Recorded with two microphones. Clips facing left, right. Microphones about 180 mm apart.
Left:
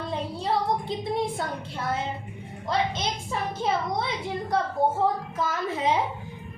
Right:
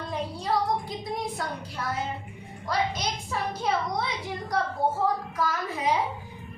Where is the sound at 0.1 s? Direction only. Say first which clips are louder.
Even; 25° left (ahead or behind).